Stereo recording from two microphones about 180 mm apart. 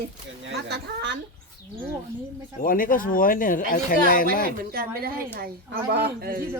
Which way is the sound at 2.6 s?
50° left (ahead or behind).